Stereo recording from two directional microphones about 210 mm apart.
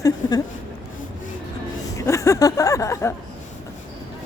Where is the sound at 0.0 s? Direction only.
15° left (ahead or behind).